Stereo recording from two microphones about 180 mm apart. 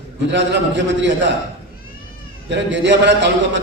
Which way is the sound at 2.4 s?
80° right.